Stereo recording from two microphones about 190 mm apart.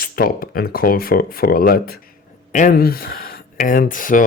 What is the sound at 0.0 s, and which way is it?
Speech, 50° left (ahead or behind).